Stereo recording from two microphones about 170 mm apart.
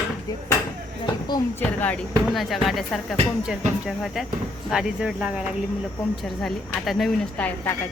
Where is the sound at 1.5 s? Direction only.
10° left (ahead or behind).